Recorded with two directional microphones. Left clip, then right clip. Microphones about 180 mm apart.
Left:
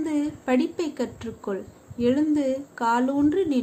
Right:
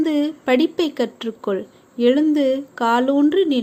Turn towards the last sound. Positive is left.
turn(degrees=-25)  # may be behind; listen again after turning